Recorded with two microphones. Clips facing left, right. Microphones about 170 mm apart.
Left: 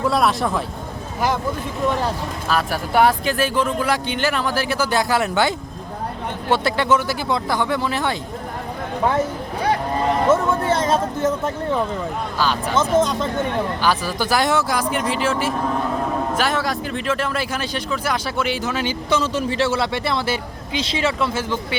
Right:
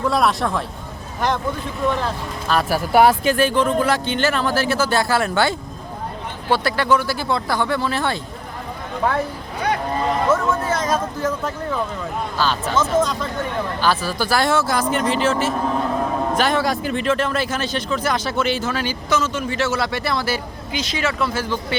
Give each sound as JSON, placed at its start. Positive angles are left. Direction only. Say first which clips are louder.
{"t": 0.0, "sound": "speech", "louder": "even", "side_deg": 0}
{"t": 2.5, "sound": "speech", "louder": "right 3 dB", "side_deg": -5}
{"t": 10.2, "sound": "speech", "louder": "left 3 dB", "side_deg": 25}
{"t": 12.4, "sound": "speech", "louder": "even", "side_deg": 15}